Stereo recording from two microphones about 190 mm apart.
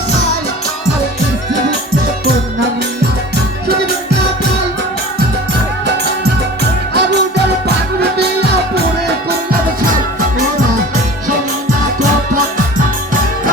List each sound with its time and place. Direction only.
5.8 s music: 60° right (ahead or behind)